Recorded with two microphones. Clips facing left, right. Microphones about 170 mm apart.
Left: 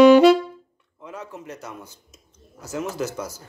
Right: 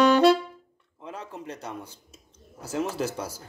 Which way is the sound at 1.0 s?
30° right (ahead or behind).